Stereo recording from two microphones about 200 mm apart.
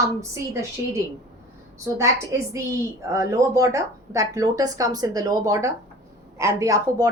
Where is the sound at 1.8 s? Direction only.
15° right (ahead or behind).